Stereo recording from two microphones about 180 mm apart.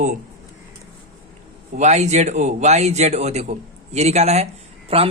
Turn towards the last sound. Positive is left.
turn(degrees=-30)  # may be behind; listen again after turning